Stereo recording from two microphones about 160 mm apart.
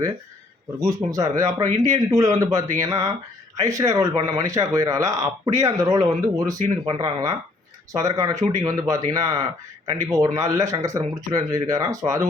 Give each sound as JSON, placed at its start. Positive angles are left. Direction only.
{"t": 0.8, "sound": "speech", "side_deg": -20}